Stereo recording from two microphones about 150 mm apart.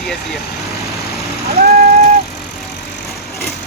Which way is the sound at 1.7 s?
85° right.